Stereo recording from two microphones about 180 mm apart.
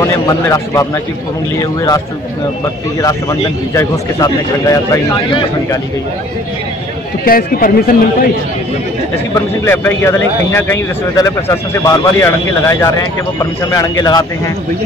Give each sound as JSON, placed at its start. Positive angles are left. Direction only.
{"t": 0.0, "sound": "a man's voice", "side_deg": 20}
{"t": 3.0, "sound": "a man's voice", "side_deg": 20}
{"t": 7.2, "sound": "a man's voice", "side_deg": 55}
{"t": 9.3, "sound": "a man's voice", "side_deg": 15}